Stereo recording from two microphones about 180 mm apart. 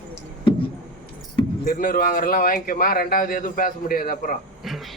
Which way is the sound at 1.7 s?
50° left (ahead or behind).